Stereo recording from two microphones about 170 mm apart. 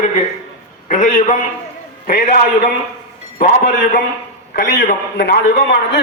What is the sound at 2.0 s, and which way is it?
A man's voice, 60° left (ahead or behind).